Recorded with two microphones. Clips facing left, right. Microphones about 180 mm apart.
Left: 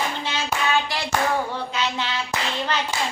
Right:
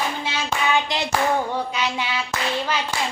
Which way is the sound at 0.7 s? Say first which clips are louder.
Right 3 dB; 20° right (ahead or behind).